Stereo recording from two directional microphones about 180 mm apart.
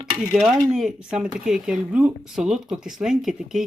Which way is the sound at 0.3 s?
Centre (ahead or behind).